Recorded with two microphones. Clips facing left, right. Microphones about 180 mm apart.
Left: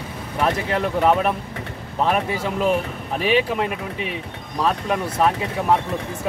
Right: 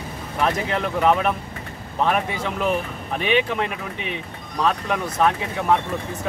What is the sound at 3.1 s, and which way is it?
Speech, centre (ahead or behind).